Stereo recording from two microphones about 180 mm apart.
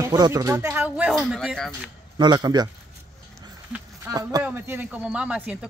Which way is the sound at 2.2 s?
25° right (ahead or behind).